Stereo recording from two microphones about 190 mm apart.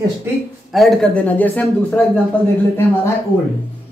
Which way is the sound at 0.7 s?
Centre (ahead or behind).